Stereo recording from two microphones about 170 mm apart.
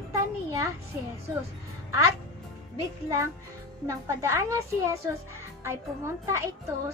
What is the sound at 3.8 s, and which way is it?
A child's voice, 15° right (ahead or behind).